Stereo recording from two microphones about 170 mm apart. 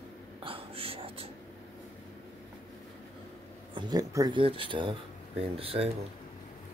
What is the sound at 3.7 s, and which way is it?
Speech, 20° right (ahead or behind).